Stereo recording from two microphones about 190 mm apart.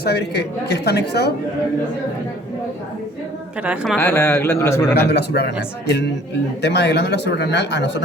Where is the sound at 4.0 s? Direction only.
10° left (ahead or behind).